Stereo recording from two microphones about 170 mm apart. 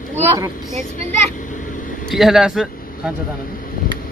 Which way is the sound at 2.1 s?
Centre (ahead or behind).